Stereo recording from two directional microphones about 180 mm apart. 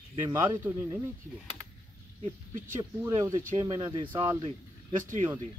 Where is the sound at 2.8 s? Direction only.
20° right (ahead or behind).